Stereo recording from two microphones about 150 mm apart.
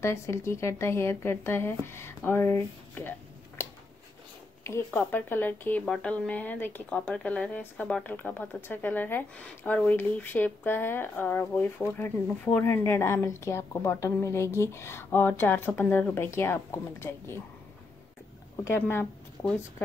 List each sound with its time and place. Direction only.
0.0 s speech: 20° left (ahead or behind)
4.6 s speech: 15° left (ahead or behind)
18.6 s speech: 15° left (ahead or behind)